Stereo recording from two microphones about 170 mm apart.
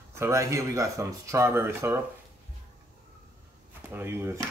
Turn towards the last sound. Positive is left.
turn(degrees=-15)  # may be behind; listen again after turning